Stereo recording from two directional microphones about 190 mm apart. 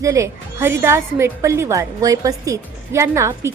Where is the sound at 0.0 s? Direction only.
15° right (ahead or behind).